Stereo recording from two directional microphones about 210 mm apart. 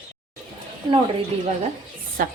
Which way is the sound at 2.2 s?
40° right (ahead or behind).